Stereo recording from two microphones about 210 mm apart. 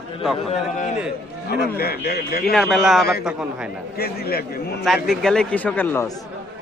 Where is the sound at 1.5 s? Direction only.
45° left (ahead or behind).